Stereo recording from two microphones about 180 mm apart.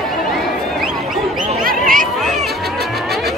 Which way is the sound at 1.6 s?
50° right (ahead or behind).